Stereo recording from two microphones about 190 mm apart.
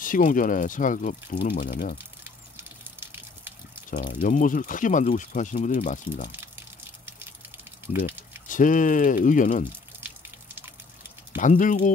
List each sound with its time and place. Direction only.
0.0 s speech: 45° left (ahead or behind)
2.0 s water: 10° right (ahead or behind)
3.9 s speech: 45° left (ahead or behind)
8.1 s a sound: 10° right (ahead or behind)
8.5 s speech: 45° left (ahead or behind)
9.9 s water: 10° right (ahead or behind)
11.3 s speech: 45° left (ahead or behind)